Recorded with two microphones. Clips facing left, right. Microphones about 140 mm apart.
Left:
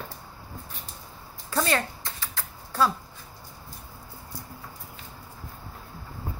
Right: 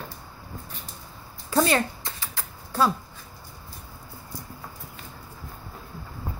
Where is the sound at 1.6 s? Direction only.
10° right (ahead or behind).